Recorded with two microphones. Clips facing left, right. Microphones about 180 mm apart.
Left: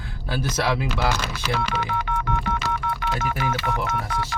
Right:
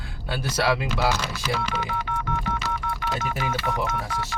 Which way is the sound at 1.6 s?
65° left (ahead or behind).